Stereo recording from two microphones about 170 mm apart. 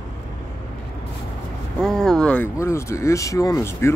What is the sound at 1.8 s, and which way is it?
Speech, 5° left (ahead or behind).